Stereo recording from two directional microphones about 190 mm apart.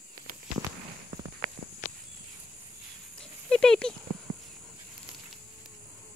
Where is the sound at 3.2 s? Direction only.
5° left (ahead or behind).